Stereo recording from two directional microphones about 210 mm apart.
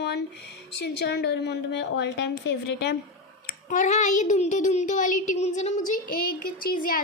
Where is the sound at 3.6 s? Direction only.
35° left (ahead or behind).